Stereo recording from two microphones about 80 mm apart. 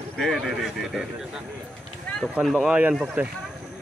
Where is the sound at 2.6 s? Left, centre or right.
Centre.